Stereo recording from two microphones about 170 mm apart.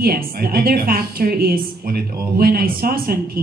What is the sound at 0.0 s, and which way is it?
A woman's voice, 60° right (ahead or behind).